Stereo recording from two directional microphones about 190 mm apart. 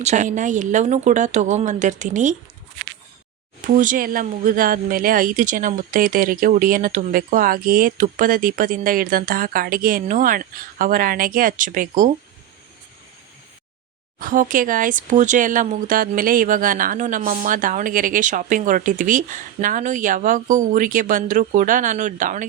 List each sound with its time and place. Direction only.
0.0 s speech: 40° right (ahead or behind)
3.7 s speech: 45° right (ahead or behind)
14.2 s speech: 45° right (ahead or behind)